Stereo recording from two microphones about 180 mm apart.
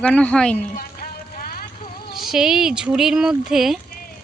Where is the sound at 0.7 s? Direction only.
50° left (ahead or behind).